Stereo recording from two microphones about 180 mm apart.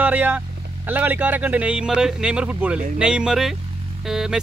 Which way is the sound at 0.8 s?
10° right (ahead or behind).